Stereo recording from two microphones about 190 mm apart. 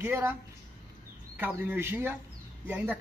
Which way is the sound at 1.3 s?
10° right (ahead or behind).